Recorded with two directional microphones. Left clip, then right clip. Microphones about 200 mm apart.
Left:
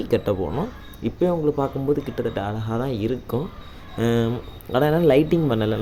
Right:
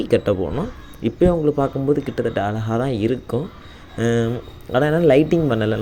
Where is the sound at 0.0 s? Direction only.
10° right (ahead or behind).